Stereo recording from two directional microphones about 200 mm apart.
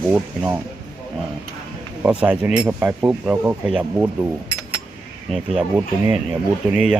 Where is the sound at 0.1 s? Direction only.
5° right (ahead or behind).